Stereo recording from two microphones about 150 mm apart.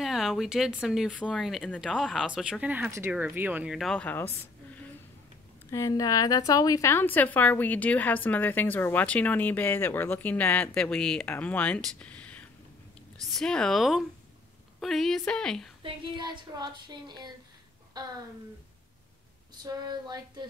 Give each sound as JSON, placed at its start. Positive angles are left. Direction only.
{"t": 0.0, "sound": "speech", "side_deg": 0}
{"t": 5.7, "sound": "a woman's voice", "side_deg": 20}
{"t": 15.8, "sound": "speech", "side_deg": -30}
{"t": 17.9, "sound": "a sound", "side_deg": -25}
{"t": 19.5, "sound": "speech", "side_deg": -30}